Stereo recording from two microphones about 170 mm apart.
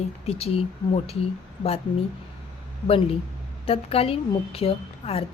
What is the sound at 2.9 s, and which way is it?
A woman's voice, 35° left (ahead or behind).